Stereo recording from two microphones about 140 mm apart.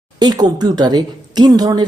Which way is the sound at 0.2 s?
30° right (ahead or behind).